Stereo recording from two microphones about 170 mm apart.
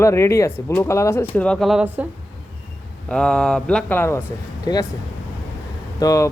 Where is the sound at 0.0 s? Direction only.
15° left (ahead or behind); by 2.0 s 5° right (ahead or behind).